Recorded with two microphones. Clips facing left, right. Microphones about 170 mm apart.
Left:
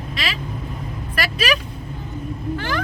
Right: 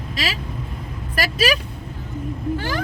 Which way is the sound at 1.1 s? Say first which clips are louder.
Right 2 dB; 40° right (ahead or behind).